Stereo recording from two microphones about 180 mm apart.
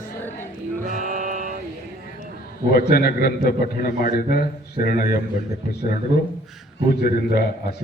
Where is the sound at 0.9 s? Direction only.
50° right (ahead or behind).